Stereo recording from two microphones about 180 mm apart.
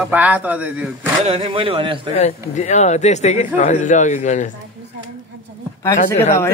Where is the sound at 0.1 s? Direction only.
10° right (ahead or behind).